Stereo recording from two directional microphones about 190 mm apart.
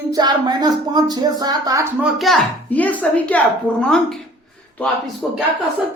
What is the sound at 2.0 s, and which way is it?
Speech, centre (ahead or behind).